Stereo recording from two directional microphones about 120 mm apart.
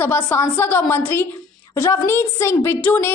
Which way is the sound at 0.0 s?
15° left (ahead or behind).